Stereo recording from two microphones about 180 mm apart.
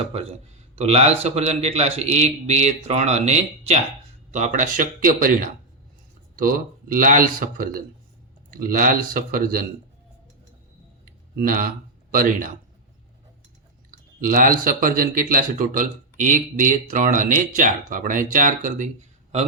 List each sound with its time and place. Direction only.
0.0 s a man's voice: 35° right (ahead or behind); by 5.3 s 50° right (ahead or behind)
6.3 s a man's voice: 50° right (ahead or behind)
11.3 s a man's voice: 50° right (ahead or behind)
14.2 s a man's voice: 50° right (ahead or behind)